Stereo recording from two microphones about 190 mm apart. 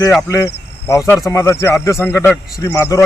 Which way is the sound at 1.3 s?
15° left (ahead or behind).